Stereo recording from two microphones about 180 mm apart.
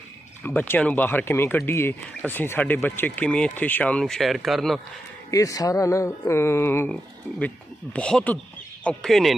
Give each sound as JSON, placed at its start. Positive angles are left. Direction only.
{"t": 0.4, "sound": "speech", "side_deg": 10}
{"t": 5.3, "sound": "speech", "side_deg": 20}
{"t": 7.9, "sound": "speech", "side_deg": 5}